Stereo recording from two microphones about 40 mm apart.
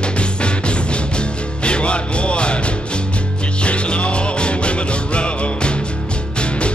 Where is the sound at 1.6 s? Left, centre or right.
Left.